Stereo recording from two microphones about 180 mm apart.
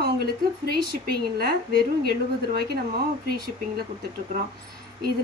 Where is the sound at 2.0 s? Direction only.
60° right (ahead or behind).